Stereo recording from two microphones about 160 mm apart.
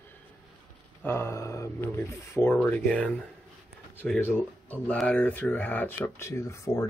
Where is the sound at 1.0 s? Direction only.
15° left (ahead or behind).